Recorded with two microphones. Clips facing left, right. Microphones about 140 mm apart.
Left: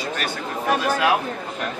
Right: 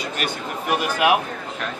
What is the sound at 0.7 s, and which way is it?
Speech, 15° right (ahead or behind).